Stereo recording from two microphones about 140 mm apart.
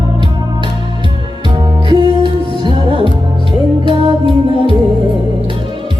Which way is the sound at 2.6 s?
35° right (ahead or behind).